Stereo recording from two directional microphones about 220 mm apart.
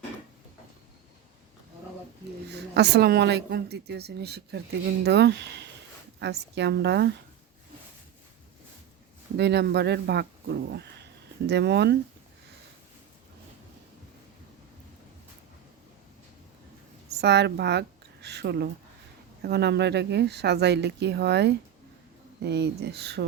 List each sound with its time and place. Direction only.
2.5 s a woman's voice: 50° right (ahead or behind)
9.4 s a woman's voice: 50° right (ahead or behind)
17.2 s a woman's voice: 50° right (ahead or behind)